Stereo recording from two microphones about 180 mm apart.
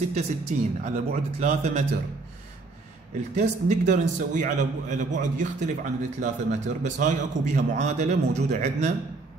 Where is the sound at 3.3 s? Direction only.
40° right (ahead or behind).